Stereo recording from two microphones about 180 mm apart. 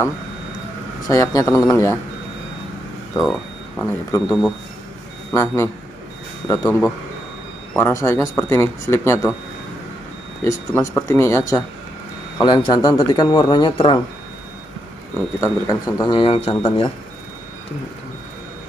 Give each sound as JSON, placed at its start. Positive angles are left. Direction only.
{"t": 1.0, "sound": "a man's voice", "side_deg": 20}
{"t": 3.2, "sound": "speech", "side_deg": 0}
{"t": 5.3, "sound": "a man's voice", "side_deg": 15}
{"t": 10.4, "sound": "a man's voice", "side_deg": 15}
{"t": 15.4, "sound": "speech", "side_deg": 20}